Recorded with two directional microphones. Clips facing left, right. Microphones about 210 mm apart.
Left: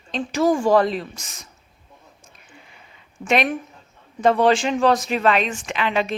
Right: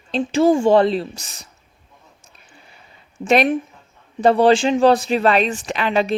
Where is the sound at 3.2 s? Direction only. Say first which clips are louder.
Right 5 dB; 35° right (ahead or behind).